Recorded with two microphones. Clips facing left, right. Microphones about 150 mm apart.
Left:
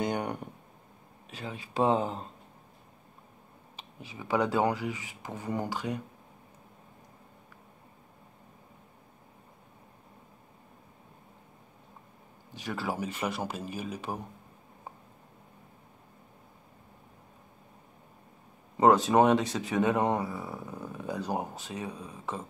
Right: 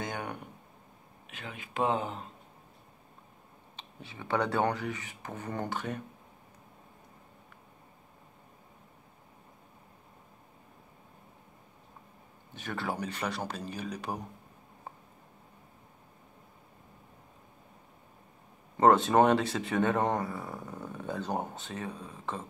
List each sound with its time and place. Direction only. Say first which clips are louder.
0.0 s a sound: left 6 dB; 30° left (ahead or behind)
1.3 s speech: left 4 dB; 35° left (ahead or behind)
3.7 s speech: left 2 dB; 5° left (ahead or behind)
12.7 s speech: left 1 dB; 5° left (ahead or behind)
18.8 s speech: left 1 dB; centre (ahead or behind)